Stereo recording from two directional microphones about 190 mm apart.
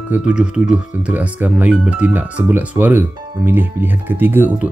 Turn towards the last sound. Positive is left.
turn(degrees=-10)  # may be behind; listen again after turning